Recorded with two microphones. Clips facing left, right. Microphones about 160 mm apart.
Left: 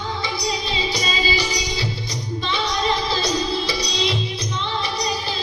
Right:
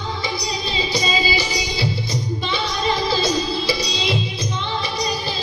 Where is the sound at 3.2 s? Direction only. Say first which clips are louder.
Right 1 dB; 5° right (ahead or behind).